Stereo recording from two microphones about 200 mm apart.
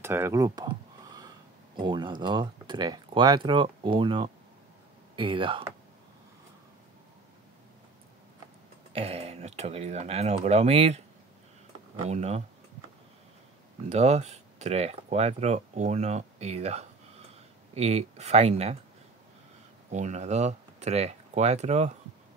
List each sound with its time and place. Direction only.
0.0 s a sound: 10° right (ahead or behind)
1.8 s speech: 25° right (ahead or behind)
8.9 s speech: 30° right (ahead or behind)
12.1 s speech: 35° right (ahead or behind)
13.8 s speech: 35° right (ahead or behind)
19.9 s speech: 35° right (ahead or behind)